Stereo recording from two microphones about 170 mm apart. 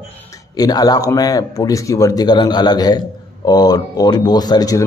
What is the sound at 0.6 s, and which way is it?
A man's voice, 25° left (ahead or behind).